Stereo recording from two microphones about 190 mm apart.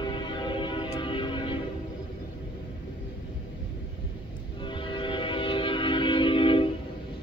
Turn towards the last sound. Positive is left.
turn(degrees=25)  # may be behind; listen again after turning